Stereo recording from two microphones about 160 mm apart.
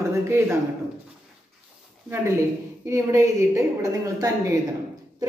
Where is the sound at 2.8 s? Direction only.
20° right (ahead or behind).